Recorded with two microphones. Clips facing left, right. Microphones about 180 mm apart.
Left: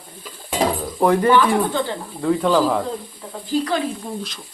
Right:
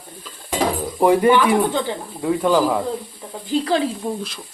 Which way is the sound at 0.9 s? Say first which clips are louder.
Right 1 dB; 10° right (ahead or behind).